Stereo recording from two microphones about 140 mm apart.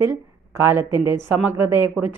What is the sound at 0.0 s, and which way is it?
A woman's voice, 15° right (ahead or behind).